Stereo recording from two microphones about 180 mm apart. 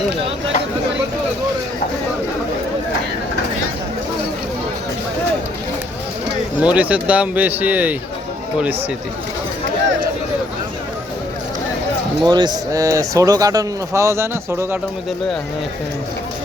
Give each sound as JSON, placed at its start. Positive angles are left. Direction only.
{"t": 6.6, "sound": "speech", "side_deg": -5}
{"t": 12.2, "sound": "speech", "side_deg": -25}